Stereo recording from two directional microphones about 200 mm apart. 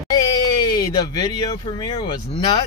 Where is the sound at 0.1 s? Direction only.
20° left (ahead or behind).